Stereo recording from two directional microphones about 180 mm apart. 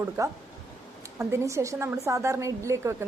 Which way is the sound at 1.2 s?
15° right (ahead or behind).